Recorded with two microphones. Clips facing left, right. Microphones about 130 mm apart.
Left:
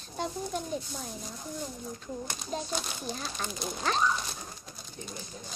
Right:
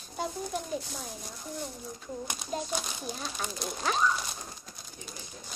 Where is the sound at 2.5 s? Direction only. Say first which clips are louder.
Right 1 dB; 5° right (ahead or behind).